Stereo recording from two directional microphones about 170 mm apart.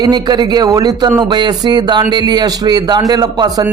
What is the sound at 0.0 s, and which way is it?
Speech, 25° right (ahead or behind).